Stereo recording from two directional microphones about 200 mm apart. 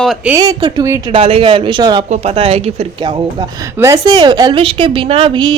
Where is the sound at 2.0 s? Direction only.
35° right (ahead or behind).